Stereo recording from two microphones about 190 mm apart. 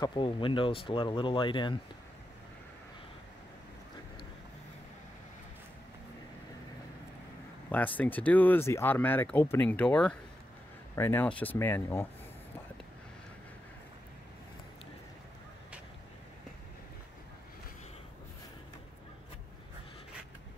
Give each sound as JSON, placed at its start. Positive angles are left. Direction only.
{"t": 0.0, "sound": "speech", "side_deg": 25}
{"t": 7.7, "sound": "speech", "side_deg": 10}